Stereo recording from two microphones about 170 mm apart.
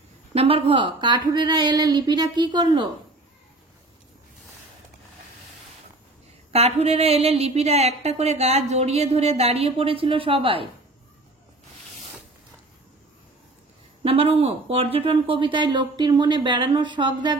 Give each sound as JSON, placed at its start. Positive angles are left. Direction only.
{"t": 0.3, "sound": "speech", "side_deg": -35}
{"t": 6.5, "sound": "a woman's voice", "side_deg": -35}
{"t": 14.0, "sound": "speech", "side_deg": -35}